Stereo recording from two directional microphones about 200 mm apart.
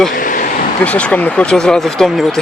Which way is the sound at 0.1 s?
40° left (ahead or behind).